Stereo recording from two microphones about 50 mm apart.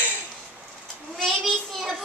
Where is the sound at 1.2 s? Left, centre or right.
Centre.